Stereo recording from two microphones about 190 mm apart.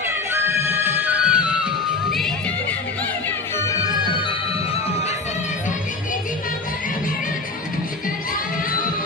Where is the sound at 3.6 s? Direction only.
15° left (ahead or behind).